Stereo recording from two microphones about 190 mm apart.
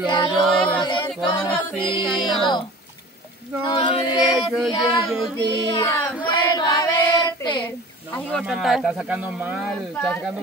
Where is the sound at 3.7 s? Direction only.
25° left (ahead or behind).